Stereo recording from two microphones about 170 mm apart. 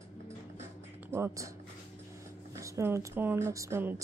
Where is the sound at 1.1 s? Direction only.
15° right (ahead or behind).